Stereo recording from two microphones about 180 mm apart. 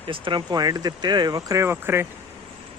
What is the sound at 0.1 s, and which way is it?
Speech, 25° right (ahead or behind).